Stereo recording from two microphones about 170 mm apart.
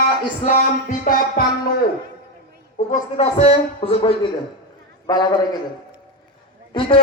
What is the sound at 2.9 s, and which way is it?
Speech, 40° left (ahead or behind).